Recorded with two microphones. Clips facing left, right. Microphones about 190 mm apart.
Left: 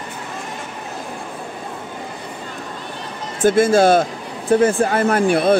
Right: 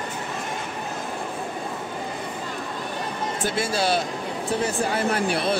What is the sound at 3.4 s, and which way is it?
Speech, 50° left (ahead or behind).